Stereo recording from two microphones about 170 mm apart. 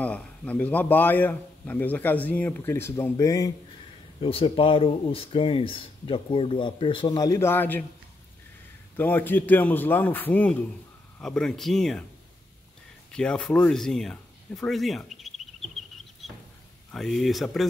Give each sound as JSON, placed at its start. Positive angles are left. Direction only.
{"t": 0.0, "sound": "a man's voice", "side_deg": 10}
{"t": 4.2, "sound": "speech", "side_deg": 35}
{"t": 8.9, "sound": "a man's voice", "side_deg": 10}
{"t": 13.1, "sound": "speech", "side_deg": 5}
{"t": 16.9, "sound": "speech", "side_deg": 0}